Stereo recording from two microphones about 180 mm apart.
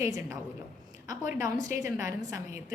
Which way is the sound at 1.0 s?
20° right (ahead or behind).